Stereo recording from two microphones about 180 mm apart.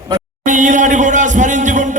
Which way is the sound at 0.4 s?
45° right (ahead or behind).